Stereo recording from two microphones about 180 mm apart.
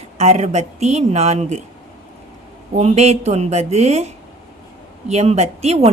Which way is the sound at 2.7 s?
35° right (ahead or behind).